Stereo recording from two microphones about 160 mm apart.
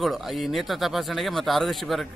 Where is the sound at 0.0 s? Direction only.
Centre (ahead or behind).